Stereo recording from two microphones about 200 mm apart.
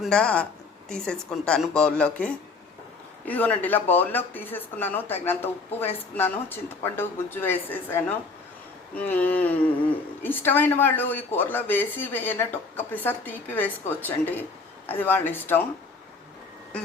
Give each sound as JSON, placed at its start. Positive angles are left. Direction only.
{"t": 0.0, "sound": "speech", "side_deg": 5}